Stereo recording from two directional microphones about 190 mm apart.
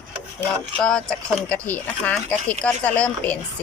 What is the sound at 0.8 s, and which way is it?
A woman's voice, 5° left (ahead or behind).